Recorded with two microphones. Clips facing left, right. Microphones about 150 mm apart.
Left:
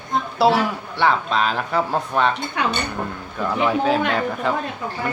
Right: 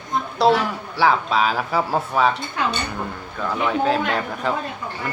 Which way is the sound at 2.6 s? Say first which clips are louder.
Left 3 dB; 70° left (ahead or behind).